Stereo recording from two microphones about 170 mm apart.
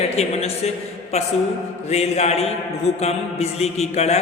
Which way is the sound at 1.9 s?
40° left (ahead or behind).